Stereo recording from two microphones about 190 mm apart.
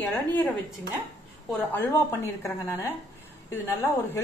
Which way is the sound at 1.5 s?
10° left (ahead or behind).